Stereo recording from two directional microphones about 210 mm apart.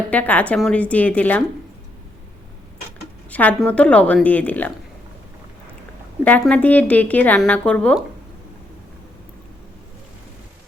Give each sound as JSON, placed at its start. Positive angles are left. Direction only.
{"t": 0.1, "sound": "speech", "side_deg": 5}
{"t": 3.2, "sound": "speech", "side_deg": 5}
{"t": 6.2, "sound": "speech", "side_deg": 5}